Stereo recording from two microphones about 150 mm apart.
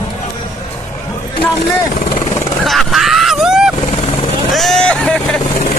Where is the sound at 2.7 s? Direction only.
Centre (ahead or behind).